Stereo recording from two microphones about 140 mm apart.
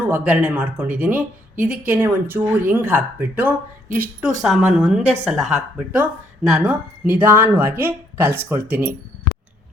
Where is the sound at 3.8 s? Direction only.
85° right.